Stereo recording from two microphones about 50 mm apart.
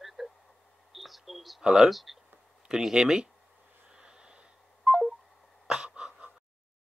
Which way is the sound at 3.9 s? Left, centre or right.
Centre.